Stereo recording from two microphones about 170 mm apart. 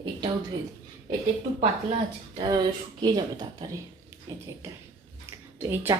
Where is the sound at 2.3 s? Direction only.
25° right (ahead or behind).